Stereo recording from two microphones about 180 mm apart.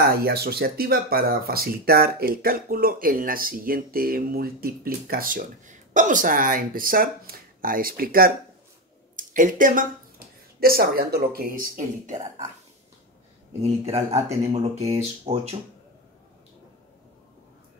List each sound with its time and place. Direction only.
0.1 s speech: 60° right (ahead or behind); by 12.3 s 45° right (ahead or behind)
14.1 s speech: 35° right (ahead or behind)